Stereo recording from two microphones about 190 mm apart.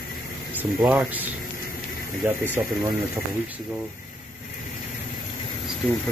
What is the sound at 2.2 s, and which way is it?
Speech, 10° right (ahead or behind).